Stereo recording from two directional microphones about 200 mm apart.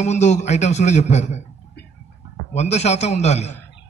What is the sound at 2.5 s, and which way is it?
A man's voice, 35° left (ahead or behind).